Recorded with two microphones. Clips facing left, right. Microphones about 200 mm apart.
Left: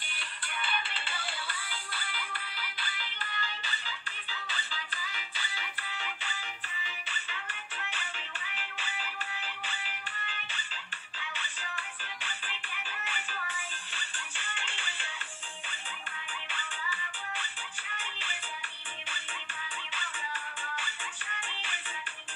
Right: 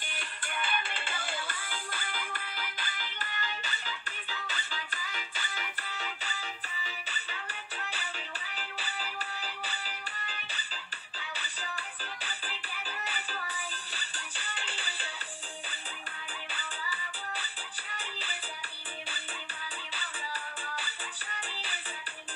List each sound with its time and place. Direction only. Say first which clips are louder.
0.1 s music: right 2 dB; 45° right (ahead or behind)
16.5 s music: left 1 dB; 35° right (ahead or behind)
21.5 s music: right 1 dB; 35° right (ahead or behind)